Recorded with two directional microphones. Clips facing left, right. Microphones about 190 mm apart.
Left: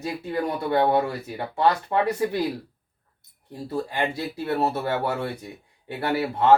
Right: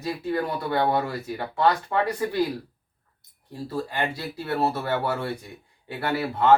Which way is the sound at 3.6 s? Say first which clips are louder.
Left 2 dB; 25° left (ahead or behind).